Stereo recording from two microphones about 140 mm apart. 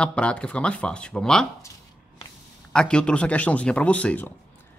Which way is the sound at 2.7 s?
5° left (ahead or behind).